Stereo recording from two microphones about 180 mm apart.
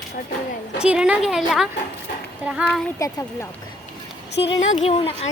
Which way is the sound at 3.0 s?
20° left (ahead or behind).